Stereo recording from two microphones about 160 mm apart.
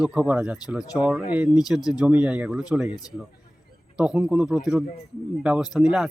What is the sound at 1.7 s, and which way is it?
Speech, 25° left (ahead or behind).